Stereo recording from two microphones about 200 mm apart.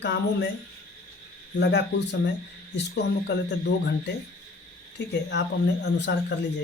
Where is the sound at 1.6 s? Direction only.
60° left (ahead or behind).